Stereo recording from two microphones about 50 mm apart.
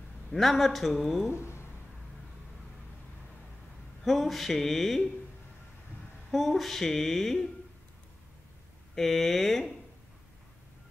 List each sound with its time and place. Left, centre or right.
0.3 s speech: centre
1.4 s a sound: left
4.0 s speech: centre
6.3 s speech: centre
8.9 s speech: centre